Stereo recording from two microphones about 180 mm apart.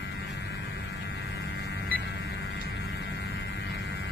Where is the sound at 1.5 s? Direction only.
70° left (ahead or behind).